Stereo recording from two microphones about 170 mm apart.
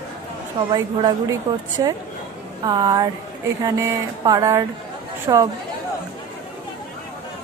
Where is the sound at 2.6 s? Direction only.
25° right (ahead or behind).